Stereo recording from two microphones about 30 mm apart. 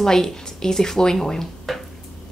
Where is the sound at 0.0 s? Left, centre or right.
Centre.